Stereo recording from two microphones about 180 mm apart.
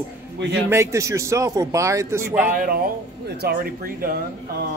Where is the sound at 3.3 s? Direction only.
65° right (ahead or behind).